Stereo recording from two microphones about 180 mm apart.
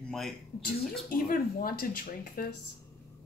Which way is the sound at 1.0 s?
55° left (ahead or behind).